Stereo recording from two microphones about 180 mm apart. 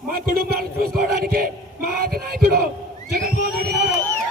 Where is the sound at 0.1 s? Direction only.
60° right (ahead or behind).